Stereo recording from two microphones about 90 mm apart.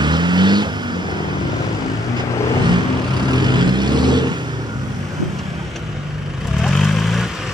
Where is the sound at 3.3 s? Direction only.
55° right (ahead or behind).